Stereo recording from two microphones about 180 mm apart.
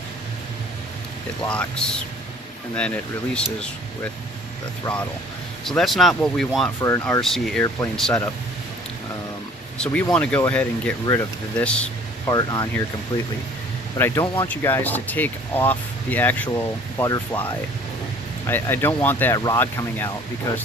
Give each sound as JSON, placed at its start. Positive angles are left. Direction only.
{"t": 1.5, "sound": "speech", "side_deg": 5}
{"t": 6.8, "sound": "speech", "side_deg": 15}
{"t": 7.2, "sound": "speech", "side_deg": 0}
{"t": 9.7, "sound": "speech", "side_deg": 5}
{"t": 11.5, "sound": "speech", "side_deg": 5}
{"t": 12.3, "sound": "speech", "side_deg": 20}
{"t": 14.0, "sound": "speech", "side_deg": 15}